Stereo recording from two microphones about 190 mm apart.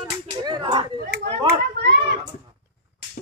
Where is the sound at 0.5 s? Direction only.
25° right (ahead or behind).